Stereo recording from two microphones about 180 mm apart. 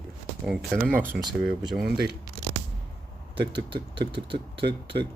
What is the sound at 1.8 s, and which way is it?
Speech, 60° right (ahead or behind).